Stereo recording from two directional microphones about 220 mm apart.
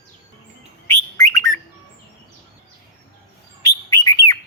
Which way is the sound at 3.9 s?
20° left (ahead or behind).